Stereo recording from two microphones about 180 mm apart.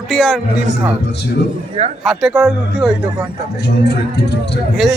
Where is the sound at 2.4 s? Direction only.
5° right (ahead or behind).